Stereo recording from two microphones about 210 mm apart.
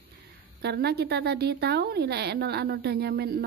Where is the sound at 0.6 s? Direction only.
50° right (ahead or behind).